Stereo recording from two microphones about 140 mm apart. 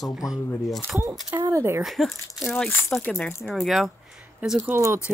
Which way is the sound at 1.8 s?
Centre (ahead or behind).